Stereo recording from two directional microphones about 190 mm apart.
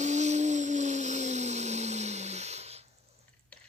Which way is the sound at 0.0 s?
35° right (ahead or behind).